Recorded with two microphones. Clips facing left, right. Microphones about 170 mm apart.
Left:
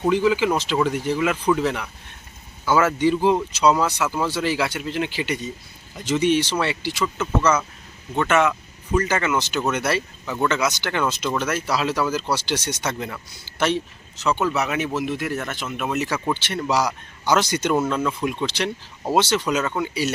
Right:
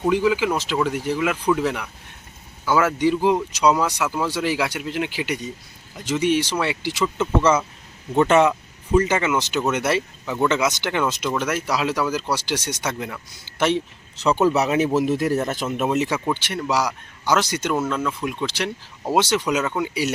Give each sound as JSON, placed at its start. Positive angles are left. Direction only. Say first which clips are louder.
{"t": 0.1, "sound": "speech", "louder": "left 1 dB", "side_deg": -10}
{"t": 9.0, "sound": "speech", "louder": "right 2 dB", "side_deg": -15}
{"t": 14.2, "sound": "speech", "louder": "right 4 dB", "side_deg": -35}
{"t": 15.9, "sound": "speech", "louder": "right 2 dB", "side_deg": -25}
{"t": 16.1, "sound": "speech", "louder": "even", "side_deg": -10}